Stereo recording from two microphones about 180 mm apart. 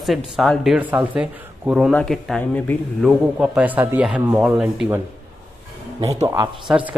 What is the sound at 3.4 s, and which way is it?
Speech, 10° right (ahead or behind).